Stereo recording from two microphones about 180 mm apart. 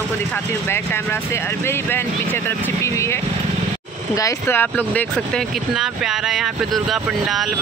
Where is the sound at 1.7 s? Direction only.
15° left (ahead or behind).